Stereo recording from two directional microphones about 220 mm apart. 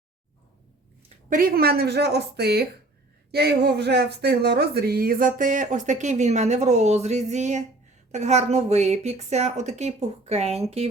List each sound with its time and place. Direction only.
1.3 s a woman's voice: 40° right (ahead or behind)